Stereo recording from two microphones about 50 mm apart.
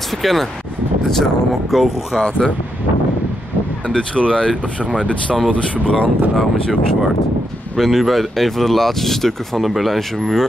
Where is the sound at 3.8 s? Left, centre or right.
Left.